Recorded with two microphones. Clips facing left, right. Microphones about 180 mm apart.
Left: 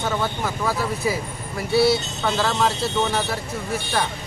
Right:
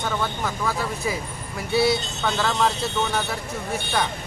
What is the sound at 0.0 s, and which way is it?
Speech, 5° left (ahead or behind).